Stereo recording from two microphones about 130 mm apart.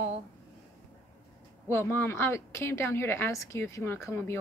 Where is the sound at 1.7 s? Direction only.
15° left (ahead or behind).